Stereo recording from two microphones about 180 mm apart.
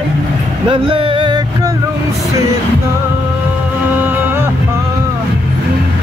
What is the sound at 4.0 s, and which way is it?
Music, 10° right (ahead or behind).